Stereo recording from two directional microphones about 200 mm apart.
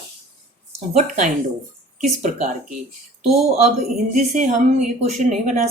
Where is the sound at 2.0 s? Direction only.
35° right (ahead or behind).